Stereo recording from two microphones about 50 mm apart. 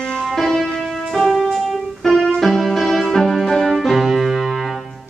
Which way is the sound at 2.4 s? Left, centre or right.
Centre.